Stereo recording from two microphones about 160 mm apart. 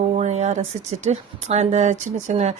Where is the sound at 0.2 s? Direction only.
45° right (ahead or behind).